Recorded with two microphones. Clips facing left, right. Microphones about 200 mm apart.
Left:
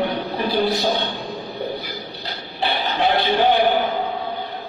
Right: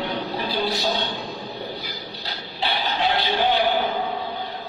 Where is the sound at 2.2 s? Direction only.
55° left (ahead or behind).